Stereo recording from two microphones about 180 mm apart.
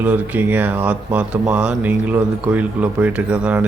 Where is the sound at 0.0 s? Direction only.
10° right (ahead or behind).